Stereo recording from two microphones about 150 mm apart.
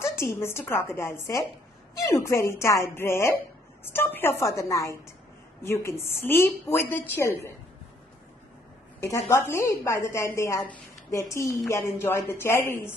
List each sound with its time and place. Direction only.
0.0 s a woman's voice: 15° left (ahead or behind)
9.0 s a woman's voice: 15° left (ahead or behind)